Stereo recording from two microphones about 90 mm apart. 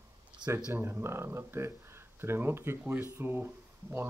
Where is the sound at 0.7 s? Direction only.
25° right (ahead or behind).